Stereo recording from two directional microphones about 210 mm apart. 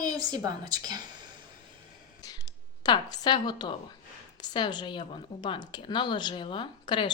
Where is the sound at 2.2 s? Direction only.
15° left (ahead or behind).